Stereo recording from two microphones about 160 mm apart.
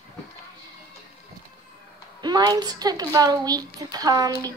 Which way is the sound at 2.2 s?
25° right (ahead or behind).